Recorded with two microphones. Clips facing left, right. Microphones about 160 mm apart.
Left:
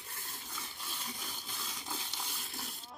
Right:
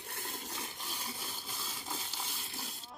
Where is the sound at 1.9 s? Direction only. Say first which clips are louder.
Right 1 dB; centre (ahead or behind).